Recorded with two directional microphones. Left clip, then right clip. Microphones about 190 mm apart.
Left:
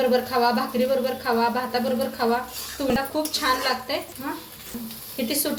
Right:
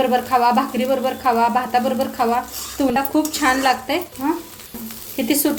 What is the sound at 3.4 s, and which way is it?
A woman's voice, 45° right (ahead or behind).